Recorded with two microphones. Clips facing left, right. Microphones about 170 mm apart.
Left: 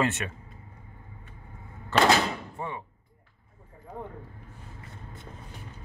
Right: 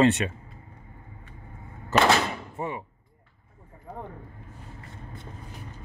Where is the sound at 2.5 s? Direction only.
20° right (ahead or behind).